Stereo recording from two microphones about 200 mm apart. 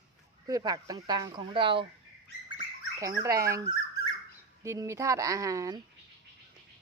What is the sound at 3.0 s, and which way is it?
Speech, 15° right (ahead or behind).